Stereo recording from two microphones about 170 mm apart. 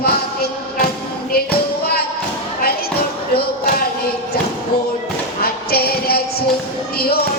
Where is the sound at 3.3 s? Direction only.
65° left (ahead or behind).